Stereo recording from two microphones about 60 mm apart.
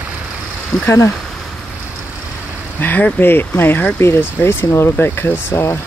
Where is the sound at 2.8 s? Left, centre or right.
Left.